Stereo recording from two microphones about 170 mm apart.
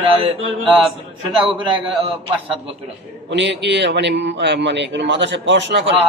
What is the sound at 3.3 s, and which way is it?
A man's voice, 90° right.